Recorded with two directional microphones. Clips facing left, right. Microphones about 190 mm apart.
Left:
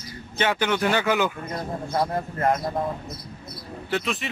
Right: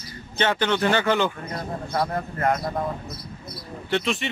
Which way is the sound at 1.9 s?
20° left (ahead or behind).